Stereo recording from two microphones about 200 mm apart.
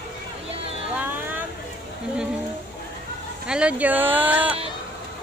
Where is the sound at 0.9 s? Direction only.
10° right (ahead or behind).